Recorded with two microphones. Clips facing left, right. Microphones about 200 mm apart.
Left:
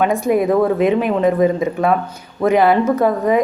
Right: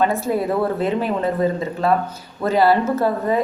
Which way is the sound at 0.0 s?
15° left (ahead or behind).